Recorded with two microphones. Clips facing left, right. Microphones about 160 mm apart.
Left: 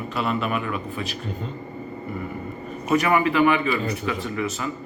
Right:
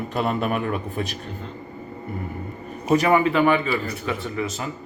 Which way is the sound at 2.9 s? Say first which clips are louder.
Right 2 dB; 30° right (ahead or behind).